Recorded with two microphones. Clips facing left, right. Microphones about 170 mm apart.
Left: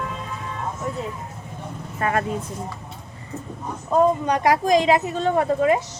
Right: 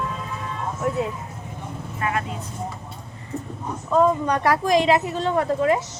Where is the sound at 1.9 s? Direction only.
40° left (ahead or behind).